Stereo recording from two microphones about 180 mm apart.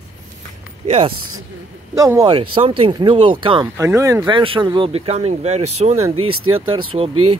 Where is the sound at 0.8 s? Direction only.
30° right (ahead or behind).